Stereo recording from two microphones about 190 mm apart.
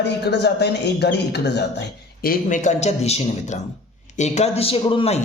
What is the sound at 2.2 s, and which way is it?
Speech, 45° left (ahead or behind).